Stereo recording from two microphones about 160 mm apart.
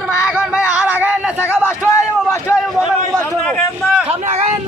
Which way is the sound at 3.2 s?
10° left (ahead or behind).